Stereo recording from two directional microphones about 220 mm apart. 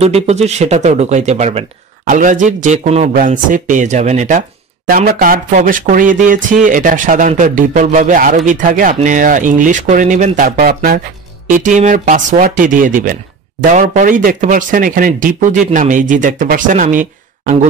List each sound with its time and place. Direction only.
0.0 s speech: 30° right (ahead or behind)